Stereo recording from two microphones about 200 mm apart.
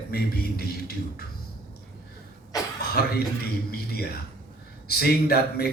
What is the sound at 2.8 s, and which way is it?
Cough, 50° left (ahead or behind).